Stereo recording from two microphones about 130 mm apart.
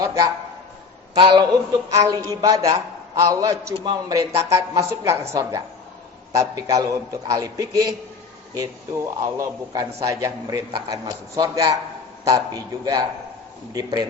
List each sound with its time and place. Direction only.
0.0 s a man's voice: 25° right (ahead or behind)
9.2 s a man's voice: 25° right (ahead or behind)